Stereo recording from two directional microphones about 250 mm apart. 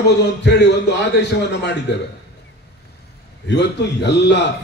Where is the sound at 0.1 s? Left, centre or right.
Left.